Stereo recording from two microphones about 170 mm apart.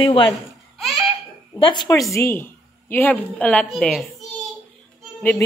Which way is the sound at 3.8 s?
Centre (ahead or behind).